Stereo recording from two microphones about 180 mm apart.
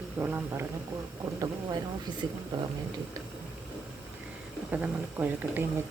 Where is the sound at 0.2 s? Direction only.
10° right (ahead or behind).